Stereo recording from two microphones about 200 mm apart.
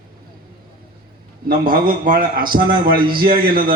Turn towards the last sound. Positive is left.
turn(degrees=-45)  # may be behind; listen again after turning